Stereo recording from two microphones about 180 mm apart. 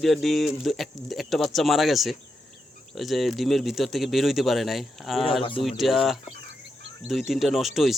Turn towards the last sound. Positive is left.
turn(degrees=0)  # may be behind; listen again after turning